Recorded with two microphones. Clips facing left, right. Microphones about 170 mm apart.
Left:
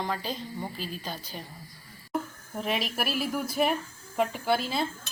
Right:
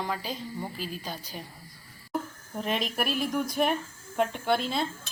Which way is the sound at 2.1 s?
5° left (ahead or behind).